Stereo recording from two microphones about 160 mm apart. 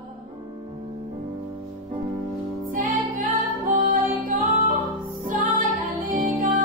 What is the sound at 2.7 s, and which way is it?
Music, 55° right (ahead or behind).